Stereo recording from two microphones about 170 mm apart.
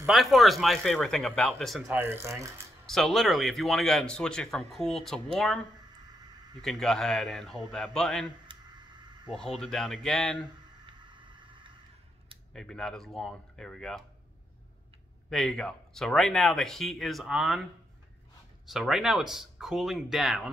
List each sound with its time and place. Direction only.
0.0 s speech: centre (ahead or behind)
2.0 s speech: 15° right (ahead or behind)
2.9 s speech: centre (ahead or behind)
6.6 s speech: centre (ahead or behind)
8.5 s a sound: 25° right (ahead or behind)
9.3 s speech: centre (ahead or behind)
10.9 s vehicle: 25° right (ahead or behind)
12.5 s speech: 5° left (ahead or behind)
15.2 s speech: 5° left (ahead or behind)
18.7 s speech: centre (ahead or behind)